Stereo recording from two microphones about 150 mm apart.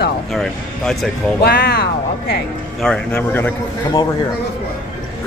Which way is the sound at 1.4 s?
90° left.